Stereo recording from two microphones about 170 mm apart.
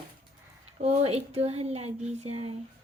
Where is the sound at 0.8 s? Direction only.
40° right (ahead or behind).